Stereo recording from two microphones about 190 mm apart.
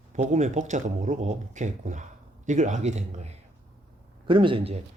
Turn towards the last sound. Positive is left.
turn(degrees=-30)  # may be behind; listen again after turning